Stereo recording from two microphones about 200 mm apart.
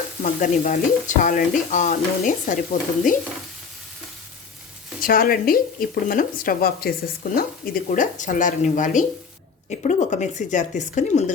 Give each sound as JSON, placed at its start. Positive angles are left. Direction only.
{"t": 0.2, "sound": "speech", "side_deg": 40}
{"t": 4.9, "sound": "speech", "side_deg": 45}